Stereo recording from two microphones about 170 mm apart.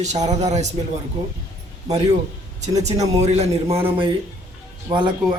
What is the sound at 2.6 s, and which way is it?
A man's voice, 40° right (ahead or behind).